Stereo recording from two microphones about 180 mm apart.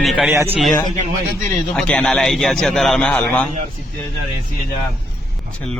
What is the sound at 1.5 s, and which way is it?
A man's voice, 5° left (ahead or behind).